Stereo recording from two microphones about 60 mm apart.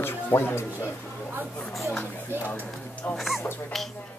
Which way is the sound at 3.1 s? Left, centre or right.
Centre.